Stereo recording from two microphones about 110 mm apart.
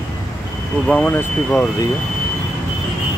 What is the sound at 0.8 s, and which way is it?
Speech, 10° left (ahead or behind).